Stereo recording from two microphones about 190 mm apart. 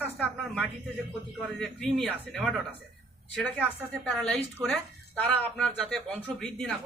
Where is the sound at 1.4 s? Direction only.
5° left (ahead or behind).